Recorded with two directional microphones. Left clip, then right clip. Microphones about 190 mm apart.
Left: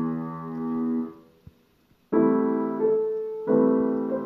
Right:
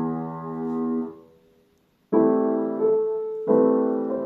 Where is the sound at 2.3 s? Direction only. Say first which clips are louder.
Right 2 dB; 25° left (ahead or behind).